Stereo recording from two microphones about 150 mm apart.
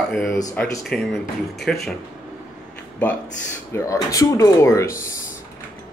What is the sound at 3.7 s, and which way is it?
Speech, 20° left (ahead or behind).